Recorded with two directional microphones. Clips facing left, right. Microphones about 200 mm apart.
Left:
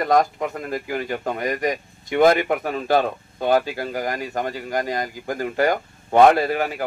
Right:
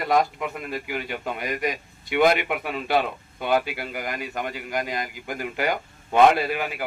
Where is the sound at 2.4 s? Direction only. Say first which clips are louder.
Left 5 dB; 35° left (ahead or behind).